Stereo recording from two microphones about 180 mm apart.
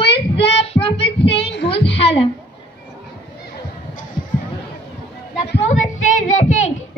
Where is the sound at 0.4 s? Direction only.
35° left (ahead or behind).